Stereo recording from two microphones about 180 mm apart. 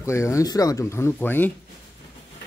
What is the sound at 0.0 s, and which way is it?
Speech, 15° left (ahead or behind).